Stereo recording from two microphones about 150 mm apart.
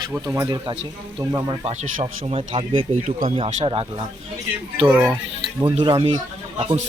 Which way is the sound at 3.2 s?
45° right (ahead or behind).